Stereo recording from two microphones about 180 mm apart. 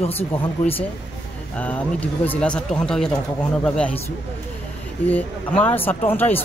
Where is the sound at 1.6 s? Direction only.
10° left (ahead or behind).